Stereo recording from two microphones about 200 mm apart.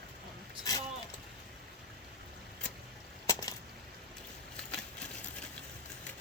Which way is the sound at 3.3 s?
15° left (ahead or behind).